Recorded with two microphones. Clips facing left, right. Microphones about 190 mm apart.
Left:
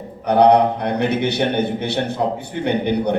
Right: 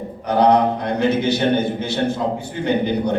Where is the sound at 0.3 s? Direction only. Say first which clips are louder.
Left 2 dB; 65° left (ahead or behind).